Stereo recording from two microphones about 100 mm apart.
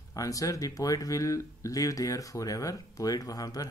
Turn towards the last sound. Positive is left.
turn(degrees=40)  # may be behind; listen again after turning